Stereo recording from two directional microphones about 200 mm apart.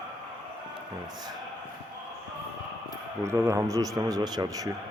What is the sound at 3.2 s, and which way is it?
Speech, 15° right (ahead or behind).